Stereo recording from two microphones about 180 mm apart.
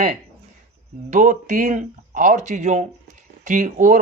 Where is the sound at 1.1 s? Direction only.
45° right (ahead or behind).